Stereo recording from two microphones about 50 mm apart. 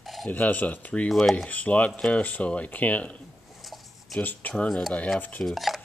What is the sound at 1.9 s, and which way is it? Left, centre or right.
Speech, centre.